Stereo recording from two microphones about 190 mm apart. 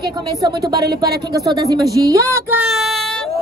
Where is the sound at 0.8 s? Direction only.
55° right (ahead or behind).